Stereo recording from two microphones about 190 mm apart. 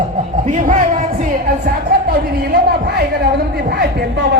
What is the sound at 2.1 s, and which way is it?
A man's voice, 55° right (ahead or behind).